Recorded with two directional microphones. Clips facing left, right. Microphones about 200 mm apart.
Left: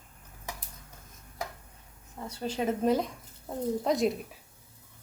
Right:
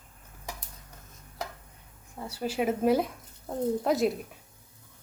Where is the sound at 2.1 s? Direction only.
10° right (ahead or behind).